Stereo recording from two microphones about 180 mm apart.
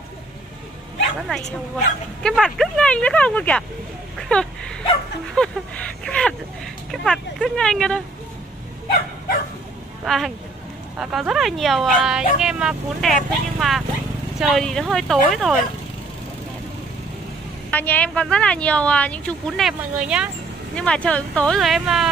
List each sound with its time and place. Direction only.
2.2 s speech: centre (ahead or behind)
10.0 s speech: centre (ahead or behind)
17.6 s speech: 10° left (ahead or behind)
20.7 s speech: 5° left (ahead or behind)